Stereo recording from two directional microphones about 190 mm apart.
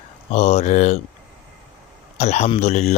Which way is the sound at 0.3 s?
35° left (ahead or behind).